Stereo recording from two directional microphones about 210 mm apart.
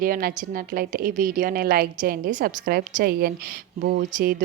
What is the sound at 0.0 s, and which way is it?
Speech, 45° right (ahead or behind).